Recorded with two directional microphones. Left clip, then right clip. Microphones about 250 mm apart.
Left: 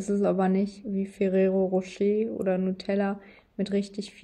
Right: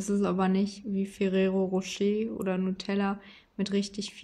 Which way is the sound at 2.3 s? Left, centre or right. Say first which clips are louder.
Left 4 dB; centre.